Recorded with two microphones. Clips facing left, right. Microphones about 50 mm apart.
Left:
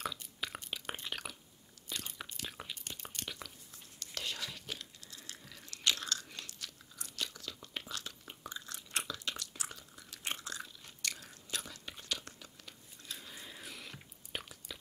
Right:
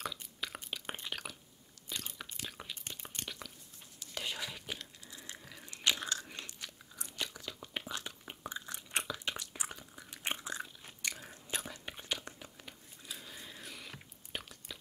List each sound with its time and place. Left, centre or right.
0.0 s a sound: centre
1.9 s biting: centre
4.0 s whispering: centre
4.7 s crumpling: right
5.4 s biting: centre
13.0 s chewing: centre